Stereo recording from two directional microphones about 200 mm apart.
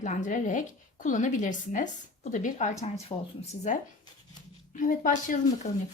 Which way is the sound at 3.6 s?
35° left (ahead or behind).